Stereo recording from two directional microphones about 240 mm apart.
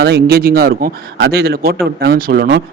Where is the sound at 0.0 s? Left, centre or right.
Right.